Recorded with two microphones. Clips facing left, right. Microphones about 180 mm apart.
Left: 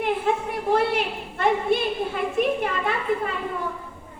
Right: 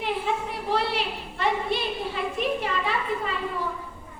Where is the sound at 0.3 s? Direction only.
50° left (ahead or behind).